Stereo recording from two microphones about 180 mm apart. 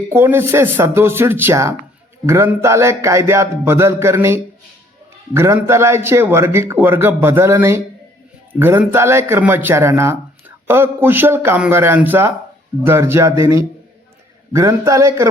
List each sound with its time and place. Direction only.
0.1 s speech: 15° right (ahead or behind)